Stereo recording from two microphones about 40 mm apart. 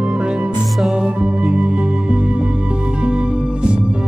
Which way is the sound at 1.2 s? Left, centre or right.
Right.